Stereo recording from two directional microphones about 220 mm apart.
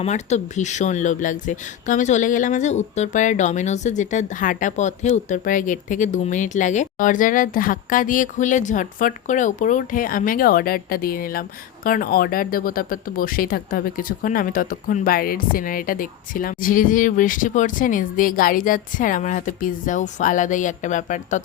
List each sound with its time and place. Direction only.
0.0 s speech: 30° left (ahead or behind)